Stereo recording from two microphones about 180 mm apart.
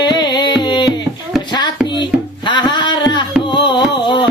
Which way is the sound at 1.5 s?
25° left (ahead or behind).